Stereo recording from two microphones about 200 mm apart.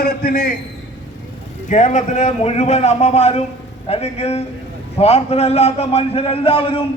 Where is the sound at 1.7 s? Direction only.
35° left (ahead or behind).